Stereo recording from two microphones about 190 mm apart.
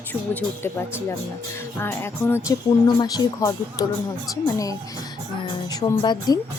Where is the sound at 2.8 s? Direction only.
20° left (ahead or behind).